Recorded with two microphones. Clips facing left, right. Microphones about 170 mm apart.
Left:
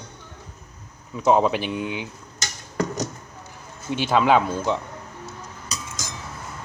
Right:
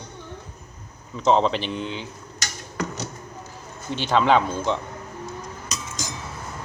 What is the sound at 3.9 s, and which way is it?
Speech, 10° left (ahead or behind).